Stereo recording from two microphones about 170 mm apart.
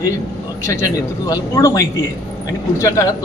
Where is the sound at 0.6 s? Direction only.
15° left (ahead or behind).